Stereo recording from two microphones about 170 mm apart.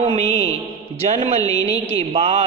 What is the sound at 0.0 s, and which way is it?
Mantra, 35° right (ahead or behind).